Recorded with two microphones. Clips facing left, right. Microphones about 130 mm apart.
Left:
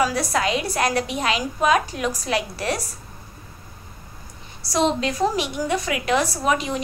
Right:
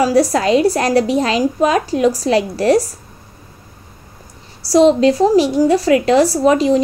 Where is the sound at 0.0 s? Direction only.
35° right (ahead or behind).